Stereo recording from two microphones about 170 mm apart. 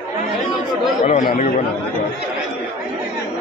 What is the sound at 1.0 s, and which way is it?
Speech, 45° left (ahead or behind).